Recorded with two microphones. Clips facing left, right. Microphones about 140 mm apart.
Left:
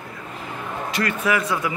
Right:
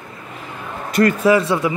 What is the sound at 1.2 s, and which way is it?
Speech, 30° right (ahead or behind).